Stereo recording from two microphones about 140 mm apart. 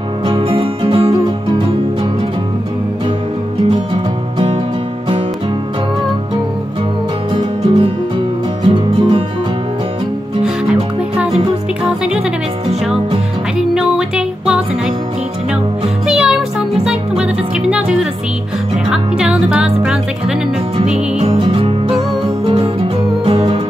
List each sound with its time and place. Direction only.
0.3 s music: 40° right (ahead or behind)
7.3 s music: 40° right (ahead or behind)
10.4 s music: 5° right (ahead or behind)
13.6 s music: 5° right (ahead or behind)
16.1 s music: 5° right (ahead or behind)
20.9 s music: 45° right (ahead or behind)